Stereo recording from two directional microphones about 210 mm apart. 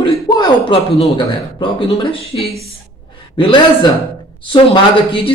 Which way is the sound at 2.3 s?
25° left (ahead or behind).